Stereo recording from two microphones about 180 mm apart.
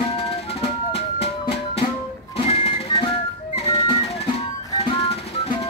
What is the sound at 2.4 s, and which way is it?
Music, 35° left (ahead or behind).